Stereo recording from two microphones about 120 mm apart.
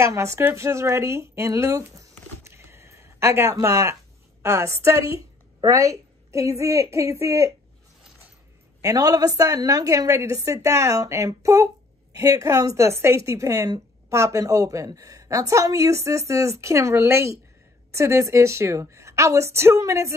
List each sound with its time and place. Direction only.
0.0 s a woman's voice: 25° right (ahead or behind)
8.8 s a woman's voice: 30° right (ahead or behind)